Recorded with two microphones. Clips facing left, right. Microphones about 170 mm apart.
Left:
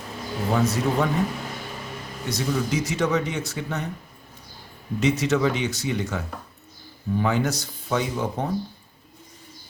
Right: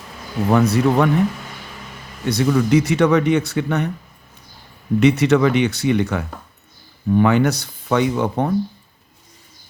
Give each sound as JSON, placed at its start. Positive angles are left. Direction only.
{"t": 0.5, "sound": "speech", "side_deg": -65}
{"t": 2.3, "sound": "speech", "side_deg": -70}
{"t": 4.9, "sound": "speech", "side_deg": -65}